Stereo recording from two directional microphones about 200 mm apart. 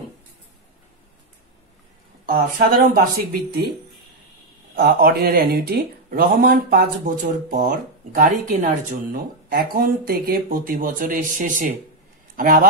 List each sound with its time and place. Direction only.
2.2 s speech: 45° right (ahead or behind)
4.7 s speech: 50° right (ahead or behind)